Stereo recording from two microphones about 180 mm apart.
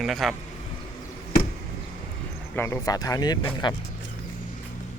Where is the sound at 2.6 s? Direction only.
15° left (ahead or behind).